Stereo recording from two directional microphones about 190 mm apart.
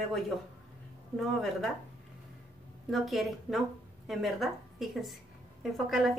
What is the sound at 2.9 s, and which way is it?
A woman's voice, centre (ahead or behind).